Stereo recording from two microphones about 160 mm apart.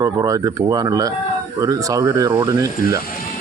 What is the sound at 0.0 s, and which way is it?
Speech, 20° right (ahead or behind).